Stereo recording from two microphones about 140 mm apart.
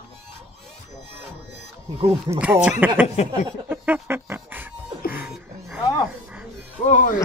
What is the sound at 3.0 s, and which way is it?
Speech, 50° left (ahead or behind).